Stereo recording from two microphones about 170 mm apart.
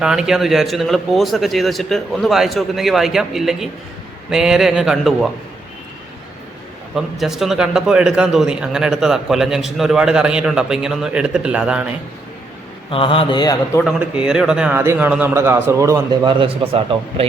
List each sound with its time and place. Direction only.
0.0 s a man's voice: 5° right (ahead or behind)
6.9 s a man's voice: centre (ahead or behind)
12.9 s a man's voice: 30° left (ahead or behind)
13.8 s a man's voice: 5° right (ahead or behind)
16.4 s a man's voice: 30° right (ahead or behind)